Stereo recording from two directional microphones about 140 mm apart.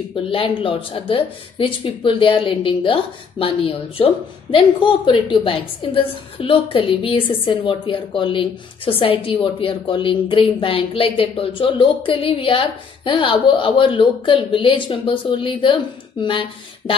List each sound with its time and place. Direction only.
0.1 s speech: 40° left (ahead or behind)